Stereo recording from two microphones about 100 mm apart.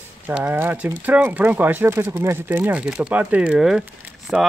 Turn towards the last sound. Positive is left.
turn(degrees=-10)  # may be behind; listen again after turning